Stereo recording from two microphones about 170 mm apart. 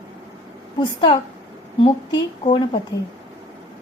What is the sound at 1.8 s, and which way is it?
A woman's voice, 25° left (ahead or behind).